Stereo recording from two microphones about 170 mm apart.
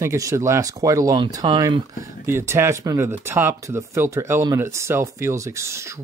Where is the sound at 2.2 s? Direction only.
15° right (ahead or behind).